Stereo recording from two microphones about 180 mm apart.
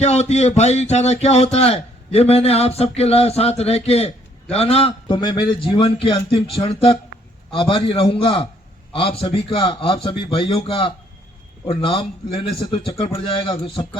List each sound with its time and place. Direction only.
0.0 s a man's voice: 35° left (ahead or behind)